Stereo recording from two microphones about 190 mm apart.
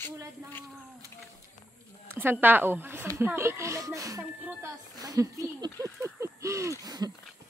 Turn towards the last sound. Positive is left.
turn(degrees=-20)  # may be behind; listen again after turning